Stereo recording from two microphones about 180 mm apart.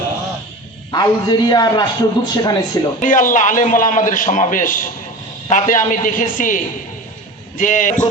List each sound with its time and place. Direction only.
0.9 s a man's voice: 20° left (ahead or behind)
3.0 s a man's voice: 45° left (ahead or behind)